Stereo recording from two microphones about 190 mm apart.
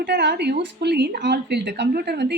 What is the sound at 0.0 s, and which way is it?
A woman's voice, 65° right (ahead or behind).